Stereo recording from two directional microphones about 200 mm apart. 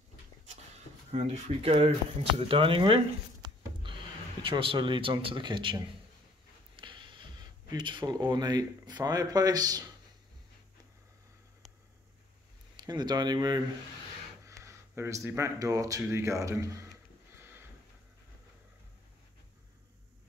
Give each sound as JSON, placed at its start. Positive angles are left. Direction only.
{"t": 1.1, "sound": "speech", "side_deg": -30}
{"t": 4.4, "sound": "speech", "side_deg": -25}
{"t": 6.8, "sound": "a sound", "side_deg": -25}
{"t": 7.7, "sound": "speech", "side_deg": -25}
{"t": 12.7, "sound": "speech", "side_deg": -20}
{"t": 14.6, "sound": "speech", "side_deg": -15}
{"t": 17.4, "sound": "a sound", "side_deg": -10}